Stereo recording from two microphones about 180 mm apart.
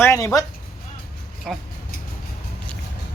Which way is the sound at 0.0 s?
15° left (ahead or behind).